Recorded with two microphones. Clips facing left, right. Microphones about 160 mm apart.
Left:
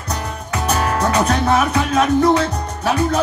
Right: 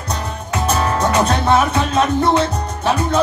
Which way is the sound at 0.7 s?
25° right (ahead or behind).